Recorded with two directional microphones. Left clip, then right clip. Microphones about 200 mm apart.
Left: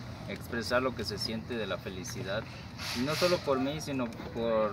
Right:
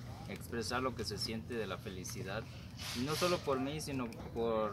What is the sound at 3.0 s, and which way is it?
Speech, 5° right (ahead or behind).